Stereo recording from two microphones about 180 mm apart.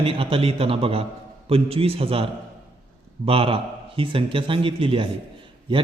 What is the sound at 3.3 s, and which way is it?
A man's voice, 30° right (ahead or behind).